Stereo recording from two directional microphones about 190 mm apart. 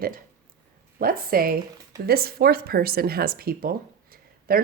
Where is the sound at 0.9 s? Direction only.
50° right (ahead or behind).